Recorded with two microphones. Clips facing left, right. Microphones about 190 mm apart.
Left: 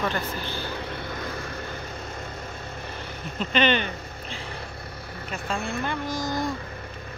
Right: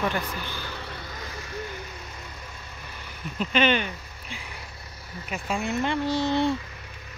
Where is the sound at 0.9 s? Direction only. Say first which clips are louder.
Left 6 dB; 55° left (ahead or behind).